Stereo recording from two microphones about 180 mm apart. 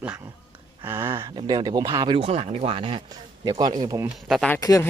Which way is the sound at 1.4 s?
25° right (ahead or behind).